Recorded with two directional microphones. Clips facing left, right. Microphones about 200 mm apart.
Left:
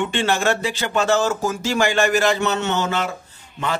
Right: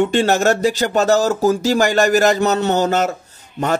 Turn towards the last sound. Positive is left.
turn(degrees=-40)  # may be behind; listen again after turning